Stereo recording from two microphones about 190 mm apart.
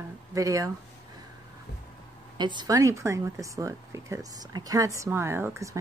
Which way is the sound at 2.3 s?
25° right (ahead or behind).